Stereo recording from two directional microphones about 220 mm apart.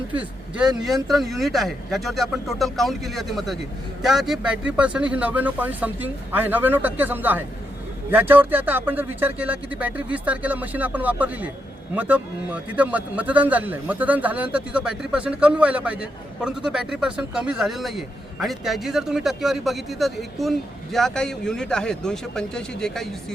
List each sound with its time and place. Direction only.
0.2 s a man's voice: 5° right (ahead or behind)